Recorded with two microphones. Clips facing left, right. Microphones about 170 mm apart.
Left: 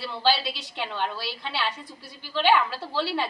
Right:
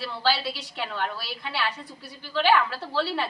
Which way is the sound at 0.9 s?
25° left (ahead or behind).